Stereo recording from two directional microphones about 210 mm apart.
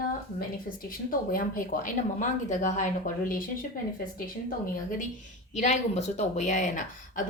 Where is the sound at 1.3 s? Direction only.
40° left (ahead or behind).